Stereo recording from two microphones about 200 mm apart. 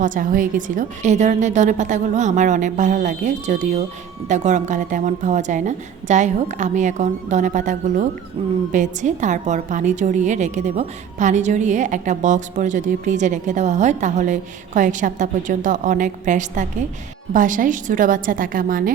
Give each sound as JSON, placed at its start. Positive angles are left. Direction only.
{"t": 0.0, "sound": "a woman's voice", "side_deg": -40}